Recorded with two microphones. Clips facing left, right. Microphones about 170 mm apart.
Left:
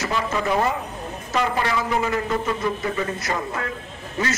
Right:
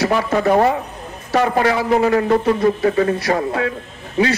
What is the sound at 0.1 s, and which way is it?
Speech, 60° right (ahead or behind).